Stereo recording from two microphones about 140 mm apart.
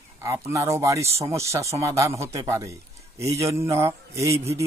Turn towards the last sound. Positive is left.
turn(degrees=-20)  # may be behind; listen again after turning